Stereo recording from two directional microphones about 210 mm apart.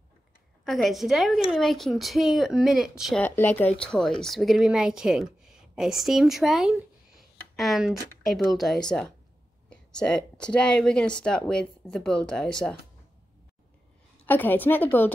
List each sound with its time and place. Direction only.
0.7 s a woman's voice: centre (ahead or behind)
14.2 s a woman's voice: 10° left (ahead or behind)